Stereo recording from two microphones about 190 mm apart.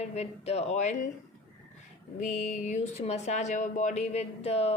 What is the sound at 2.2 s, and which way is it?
Speech, 40° left (ahead or behind).